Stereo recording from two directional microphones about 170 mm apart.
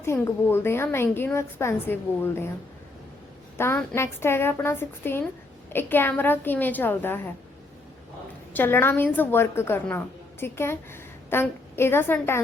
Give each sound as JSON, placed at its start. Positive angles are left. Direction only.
{"t": 0.0, "sound": "a woman's voice", "side_deg": 15}
{"t": 3.6, "sound": "a woman's voice", "side_deg": 15}
{"t": 8.5, "sound": "a woman's voice", "side_deg": 15}